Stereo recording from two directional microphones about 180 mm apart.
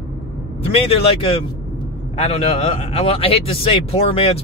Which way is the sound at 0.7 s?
35° left (ahead or behind).